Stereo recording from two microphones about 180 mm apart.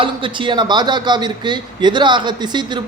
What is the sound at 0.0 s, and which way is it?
A man's voice, 25° right (ahead or behind).